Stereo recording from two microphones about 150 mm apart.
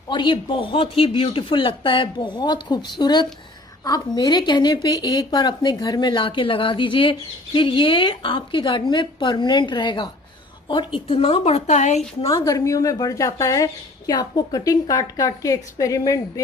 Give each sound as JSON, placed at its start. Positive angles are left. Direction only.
{"t": 0.1, "sound": "speech", "side_deg": 30}
{"t": 12.3, "sound": "speech", "side_deg": 25}